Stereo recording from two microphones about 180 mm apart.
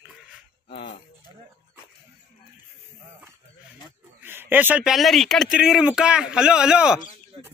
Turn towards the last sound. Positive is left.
turn(degrees=-5)  # may be behind; listen again after turning